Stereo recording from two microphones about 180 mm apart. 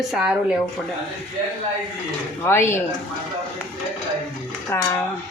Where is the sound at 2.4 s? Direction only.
15° left (ahead or behind).